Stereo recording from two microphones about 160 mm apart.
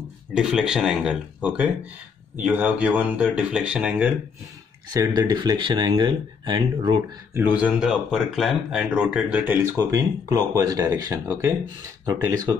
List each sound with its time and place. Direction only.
0.3 s speech: 5° right (ahead or behind)
4.8 s speech: 25° right (ahead or behind)
7.3 s speech: 10° right (ahead or behind)